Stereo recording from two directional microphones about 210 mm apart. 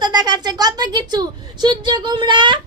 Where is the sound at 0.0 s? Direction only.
20° right (ahead or behind).